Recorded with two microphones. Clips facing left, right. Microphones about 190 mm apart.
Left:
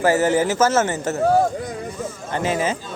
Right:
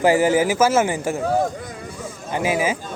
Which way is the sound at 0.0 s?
15° right (ahead or behind).